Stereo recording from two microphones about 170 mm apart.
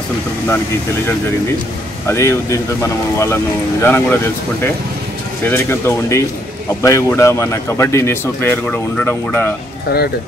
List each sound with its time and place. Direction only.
2.0 s speech: 15° left (ahead or behind)
5.4 s speech: 15° left (ahead or behind)